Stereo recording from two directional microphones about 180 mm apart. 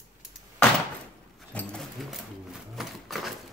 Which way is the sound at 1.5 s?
5° left (ahead or behind).